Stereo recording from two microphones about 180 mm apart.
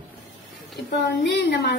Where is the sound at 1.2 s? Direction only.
70° left (ahead or behind).